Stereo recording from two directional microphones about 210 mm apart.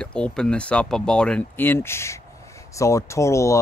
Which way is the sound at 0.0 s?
5° left (ahead or behind).